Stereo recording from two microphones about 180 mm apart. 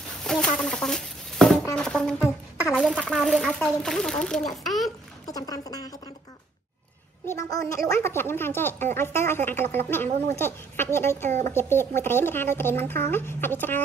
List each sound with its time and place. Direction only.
0.2 s chicken: 5° left (ahead or behind)
1.8 s music: 5° left (ahead or behind)
2.2 s music: 15° left (ahead or behind)
2.9 s speech: 5° right (ahead or behind)
4.6 s a sound: centre (ahead or behind)
5.2 s speech: 20° left (ahead or behind)
7.8 s speech: 15° left (ahead or behind)
11.2 s speech: 40° right (ahead or behind)
11.5 s speech: 15° left (ahead or behind)